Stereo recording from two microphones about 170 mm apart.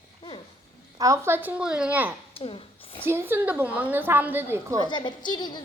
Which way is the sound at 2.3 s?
30° left (ahead or behind).